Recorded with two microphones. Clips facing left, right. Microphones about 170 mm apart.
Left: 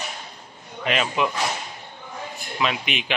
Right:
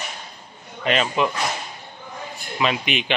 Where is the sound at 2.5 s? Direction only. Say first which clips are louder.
Right 3 dB; centre (ahead or behind).